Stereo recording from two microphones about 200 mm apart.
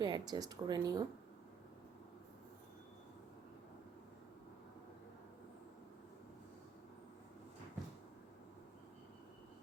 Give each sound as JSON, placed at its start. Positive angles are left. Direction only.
{"t": 0.0, "sound": "speech", "side_deg": -20}